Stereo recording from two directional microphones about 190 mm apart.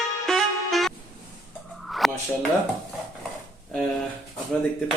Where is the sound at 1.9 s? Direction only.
Centre (ahead or behind).